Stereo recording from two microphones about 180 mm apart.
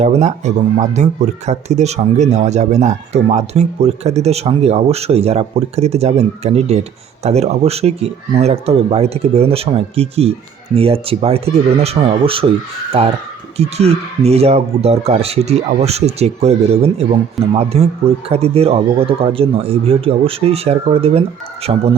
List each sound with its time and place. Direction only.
0.0 s speech: 40° right (ahead or behind)